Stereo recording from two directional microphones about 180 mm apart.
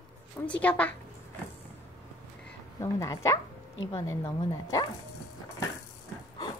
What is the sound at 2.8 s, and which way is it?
Speech, 15° left (ahead or behind).